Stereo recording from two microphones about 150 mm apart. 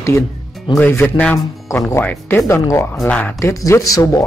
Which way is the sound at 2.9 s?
10° left (ahead or behind).